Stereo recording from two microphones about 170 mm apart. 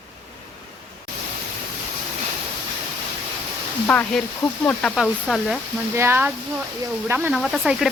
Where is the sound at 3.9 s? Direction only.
10° left (ahead or behind).